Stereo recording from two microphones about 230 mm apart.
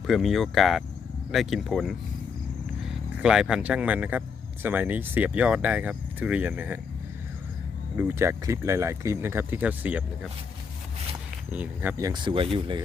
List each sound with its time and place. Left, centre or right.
0.1 s speech: centre
7.9 s speech: centre
11.5 s speech: centre